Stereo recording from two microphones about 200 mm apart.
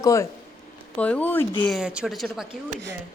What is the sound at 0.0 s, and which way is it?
Speech, 15° left (ahead or behind).